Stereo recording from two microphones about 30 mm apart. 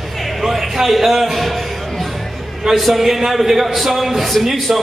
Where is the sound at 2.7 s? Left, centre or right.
Centre.